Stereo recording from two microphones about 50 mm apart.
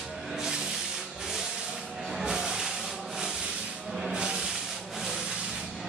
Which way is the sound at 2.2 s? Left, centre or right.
Centre.